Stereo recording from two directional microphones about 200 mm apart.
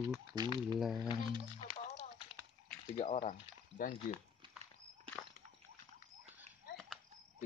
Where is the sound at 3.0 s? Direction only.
35° left (ahead or behind).